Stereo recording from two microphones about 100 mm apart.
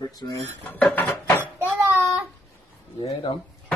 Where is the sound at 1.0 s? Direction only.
35° left (ahead or behind).